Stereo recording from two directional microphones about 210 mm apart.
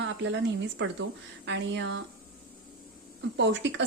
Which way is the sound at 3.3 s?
55° right (ahead or behind).